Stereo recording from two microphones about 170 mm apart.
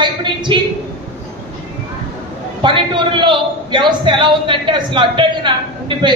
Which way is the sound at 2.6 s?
30° right (ahead or behind).